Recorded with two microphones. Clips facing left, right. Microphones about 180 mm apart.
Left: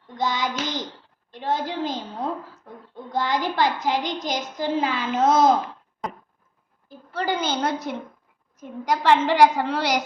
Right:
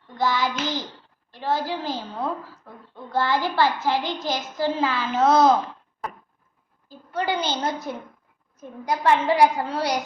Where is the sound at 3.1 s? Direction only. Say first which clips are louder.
Right 1 dB; 15° left (ahead or behind).